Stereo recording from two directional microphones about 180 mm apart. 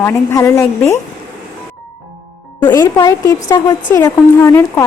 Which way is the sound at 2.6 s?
20° left (ahead or behind).